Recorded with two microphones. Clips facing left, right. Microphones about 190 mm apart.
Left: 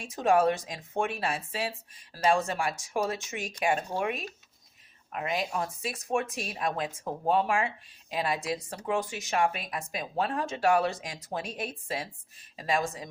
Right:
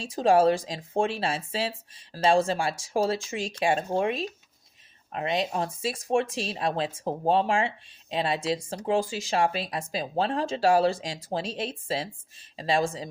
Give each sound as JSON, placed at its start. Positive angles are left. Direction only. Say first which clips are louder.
{"t": 0.0, "sound": "speech", "louder": "right 4 dB", "side_deg": -30}